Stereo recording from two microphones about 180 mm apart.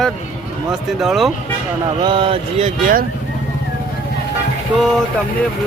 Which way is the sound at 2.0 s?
30° right (ahead or behind).